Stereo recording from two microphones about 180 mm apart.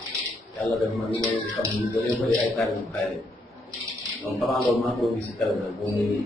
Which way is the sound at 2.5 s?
Centre (ahead or behind).